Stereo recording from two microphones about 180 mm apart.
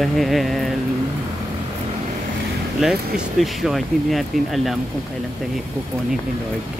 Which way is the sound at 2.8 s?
Centre (ahead or behind).